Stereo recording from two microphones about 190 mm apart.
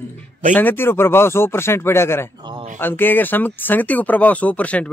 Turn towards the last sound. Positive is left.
turn(degrees=5)  # may be behind; listen again after turning